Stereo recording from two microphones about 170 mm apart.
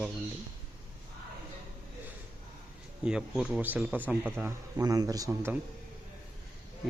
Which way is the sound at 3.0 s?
5° right (ahead or behind).